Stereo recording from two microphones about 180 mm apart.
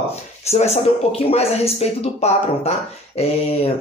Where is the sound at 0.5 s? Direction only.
35° left (ahead or behind).